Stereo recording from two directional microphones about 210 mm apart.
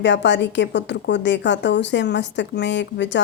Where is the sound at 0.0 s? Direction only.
55° left (ahead or behind).